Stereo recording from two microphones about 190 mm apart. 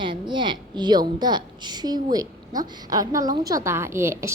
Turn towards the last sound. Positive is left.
turn(degrees=-15)  # may be behind; listen again after turning